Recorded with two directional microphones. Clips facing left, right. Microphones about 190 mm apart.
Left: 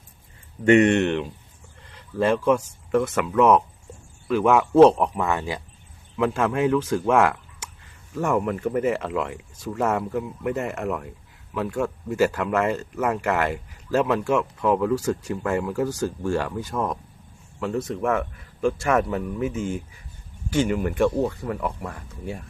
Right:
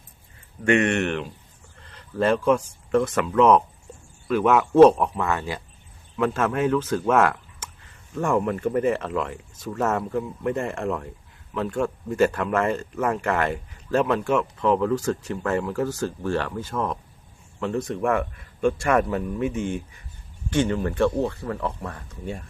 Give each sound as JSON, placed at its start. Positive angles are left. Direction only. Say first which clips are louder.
{"t": 0.6, "sound": "a man's voice", "louder": "left 4 dB", "side_deg": 20}